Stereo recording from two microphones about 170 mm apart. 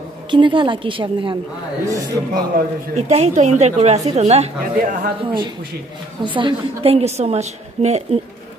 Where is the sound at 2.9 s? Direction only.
40° right (ahead or behind).